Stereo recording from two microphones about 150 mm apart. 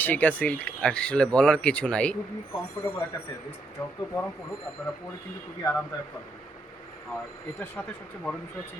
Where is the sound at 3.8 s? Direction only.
20° left (ahead or behind).